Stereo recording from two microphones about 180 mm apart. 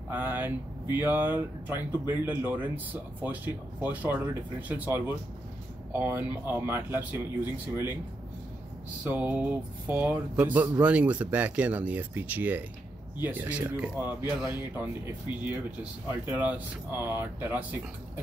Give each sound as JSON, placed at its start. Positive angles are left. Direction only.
{"t": 0.1, "sound": "speech", "side_deg": -10}
{"t": 9.0, "sound": "speech", "side_deg": -10}
{"t": 14.2, "sound": "speech", "side_deg": 25}
{"t": 16.1, "sound": "speech", "side_deg": -10}